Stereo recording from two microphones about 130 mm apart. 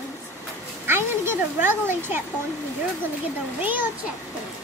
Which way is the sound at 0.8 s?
15° right (ahead or behind).